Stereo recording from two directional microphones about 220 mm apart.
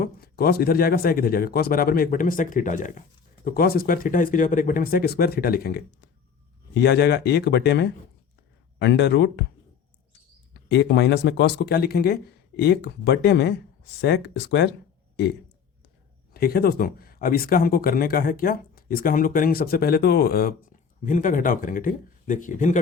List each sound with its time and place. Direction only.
0.0 s speech: 45° left (ahead or behind)
10.5 s speech: 50° left (ahead or behind)
16.3 s speech: 45° left (ahead or behind)